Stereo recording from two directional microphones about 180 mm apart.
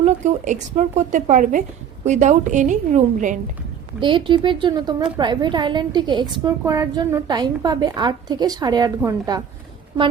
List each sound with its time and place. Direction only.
0.0 s speech: 40° right (ahead or behind)
4.0 s a woman's voice: 25° right (ahead or behind)